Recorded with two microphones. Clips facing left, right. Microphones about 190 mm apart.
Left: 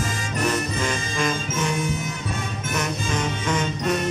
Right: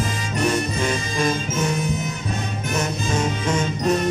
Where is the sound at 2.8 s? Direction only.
25° right (ahead or behind).